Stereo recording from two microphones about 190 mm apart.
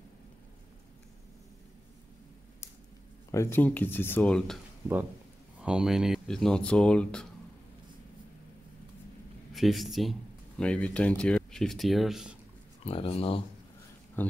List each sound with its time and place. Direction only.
3.3 s speech: 15° left (ahead or behind)
5.6 s speech: 5° right (ahead or behind)
9.5 s speech: centre (ahead or behind)
12.8 s speech: 30° left (ahead or behind)